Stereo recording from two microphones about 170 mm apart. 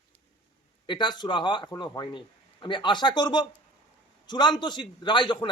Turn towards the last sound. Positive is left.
turn(degrees=30)  # may be behind; listen again after turning